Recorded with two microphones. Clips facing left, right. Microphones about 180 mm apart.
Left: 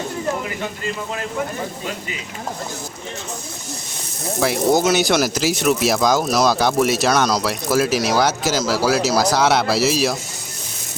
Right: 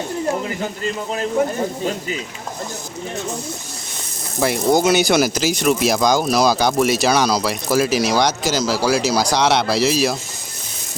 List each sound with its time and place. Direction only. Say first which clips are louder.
4.4 s speech: right 1 dB; centre (ahead or behind)